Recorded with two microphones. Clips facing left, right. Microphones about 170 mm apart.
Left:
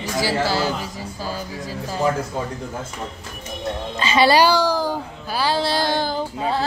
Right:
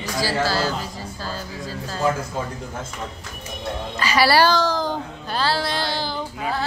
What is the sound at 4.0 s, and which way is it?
A child's voice, 25° left (ahead or behind).